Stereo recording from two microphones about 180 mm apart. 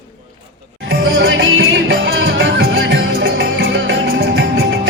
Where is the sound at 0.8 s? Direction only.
90° right.